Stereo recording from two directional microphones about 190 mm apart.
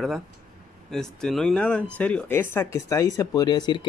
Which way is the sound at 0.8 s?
Centre (ahead or behind).